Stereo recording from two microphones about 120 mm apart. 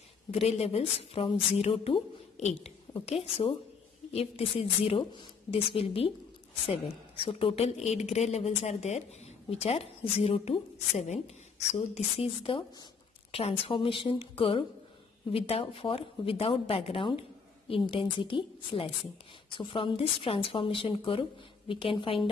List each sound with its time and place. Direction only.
0.3 s a woman's voice: 60° left (ahead or behind)
2.9 s speech: 55° left (ahead or behind)
7.2 s a woman's voice: 50° left (ahead or behind)